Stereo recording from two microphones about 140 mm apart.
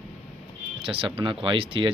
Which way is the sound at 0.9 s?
40° right (ahead or behind).